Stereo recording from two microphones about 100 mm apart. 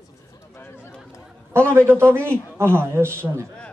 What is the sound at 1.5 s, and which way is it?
A man's voice, 25° right (ahead or behind).